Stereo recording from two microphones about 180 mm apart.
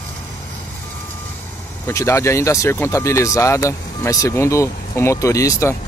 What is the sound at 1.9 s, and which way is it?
Speech, 15° left (ahead or behind).